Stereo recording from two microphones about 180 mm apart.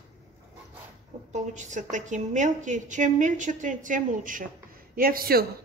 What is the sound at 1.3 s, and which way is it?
A woman's voice, 40° right (ahead or behind).